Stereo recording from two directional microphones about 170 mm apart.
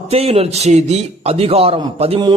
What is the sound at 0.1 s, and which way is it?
A man's voice, 35° right (ahead or behind).